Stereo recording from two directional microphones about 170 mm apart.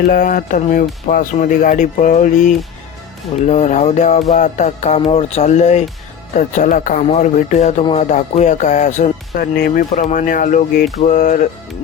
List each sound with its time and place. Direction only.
0.0 s speech: 55° left (ahead or behind)
9.6 s speech: 60° left (ahead or behind)
9.9 s speech: 45° left (ahead or behind)